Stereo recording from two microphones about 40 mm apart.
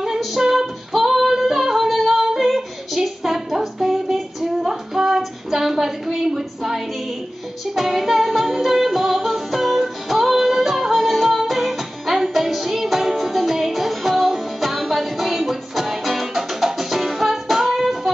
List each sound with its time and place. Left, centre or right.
0.0 s female singing: centre
7.7 s music: centre